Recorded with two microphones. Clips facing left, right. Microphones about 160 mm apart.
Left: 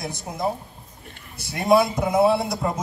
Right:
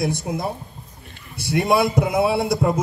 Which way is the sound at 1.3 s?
65° right (ahead or behind).